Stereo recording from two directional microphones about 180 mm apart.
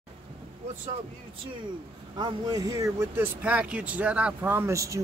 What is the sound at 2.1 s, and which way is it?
Speech, 25° right (ahead or behind).